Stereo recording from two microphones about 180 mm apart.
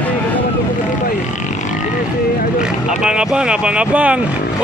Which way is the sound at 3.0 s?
5° right (ahead or behind).